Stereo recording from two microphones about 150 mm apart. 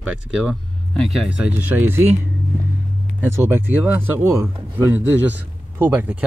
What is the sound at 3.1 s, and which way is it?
Speech, 15° right (ahead or behind).